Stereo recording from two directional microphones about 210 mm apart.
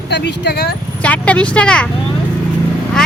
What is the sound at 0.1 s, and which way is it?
Speech, 50° left (ahead or behind).